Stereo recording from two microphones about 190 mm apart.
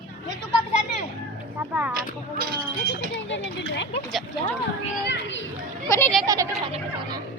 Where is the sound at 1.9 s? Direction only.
50° right (ahead or behind).